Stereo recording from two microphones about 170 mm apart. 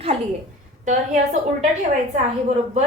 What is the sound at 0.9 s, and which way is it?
Speech, 45° right (ahead or behind).